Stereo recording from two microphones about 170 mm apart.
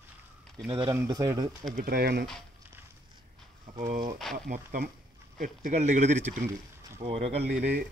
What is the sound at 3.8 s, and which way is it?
A man's voice, 55° right (ahead or behind).